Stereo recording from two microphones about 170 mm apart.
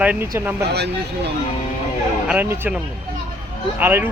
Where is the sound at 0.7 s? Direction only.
75° right (ahead or behind).